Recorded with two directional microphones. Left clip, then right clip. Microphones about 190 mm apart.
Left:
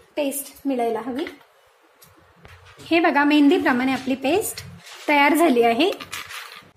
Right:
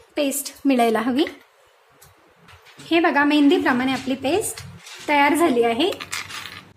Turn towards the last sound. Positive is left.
turn(degrees=0)  # may be behind; listen again after turning